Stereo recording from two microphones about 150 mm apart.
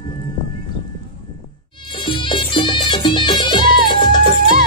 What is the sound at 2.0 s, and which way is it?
Music, 30° left (ahead or behind).